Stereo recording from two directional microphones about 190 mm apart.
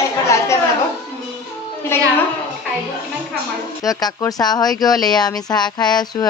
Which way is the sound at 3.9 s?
20° left (ahead or behind).